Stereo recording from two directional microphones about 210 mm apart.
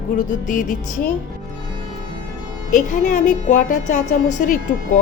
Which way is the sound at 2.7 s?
35° left (ahead or behind).